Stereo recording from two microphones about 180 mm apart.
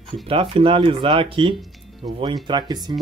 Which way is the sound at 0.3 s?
30° right (ahead or behind).